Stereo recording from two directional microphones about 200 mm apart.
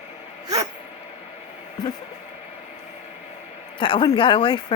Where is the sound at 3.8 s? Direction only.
25° left (ahead or behind).